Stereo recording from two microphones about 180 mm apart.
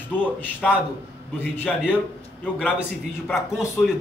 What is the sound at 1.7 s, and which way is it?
A man's voice, centre (ahead or behind).